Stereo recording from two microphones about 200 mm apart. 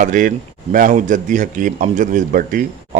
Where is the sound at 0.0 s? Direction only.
40° right (ahead or behind).